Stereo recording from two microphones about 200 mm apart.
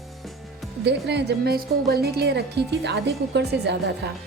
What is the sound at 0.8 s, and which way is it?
A woman's voice, 55° right (ahead or behind).